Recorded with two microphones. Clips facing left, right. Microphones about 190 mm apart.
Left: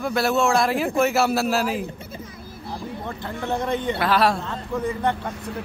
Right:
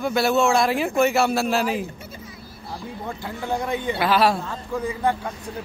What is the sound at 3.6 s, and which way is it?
Speech, 5° right (ahead or behind).